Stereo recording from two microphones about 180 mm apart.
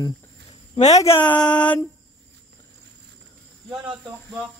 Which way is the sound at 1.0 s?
10° left (ahead or behind).